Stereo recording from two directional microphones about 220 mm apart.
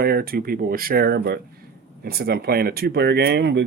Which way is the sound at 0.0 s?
45° right (ahead or behind).